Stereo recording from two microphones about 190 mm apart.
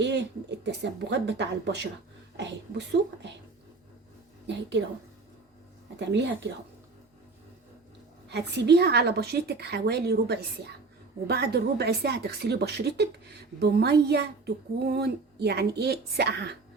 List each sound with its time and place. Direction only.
0.0 s a woman's voice: 65° right (ahead or behind)
6.0 s speech: 65° right (ahead or behind)
8.3 s a woman's voice: 60° right (ahead or behind)